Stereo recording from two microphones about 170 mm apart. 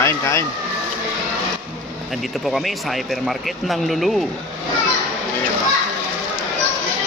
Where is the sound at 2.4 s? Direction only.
Centre (ahead or behind).